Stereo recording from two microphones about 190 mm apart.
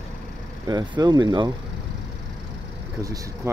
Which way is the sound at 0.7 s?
20° right (ahead or behind).